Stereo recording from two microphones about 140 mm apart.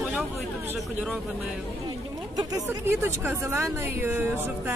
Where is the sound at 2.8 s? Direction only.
15° right (ahead or behind).